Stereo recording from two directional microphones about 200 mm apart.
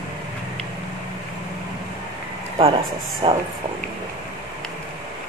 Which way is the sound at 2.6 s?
25° right (ahead or behind).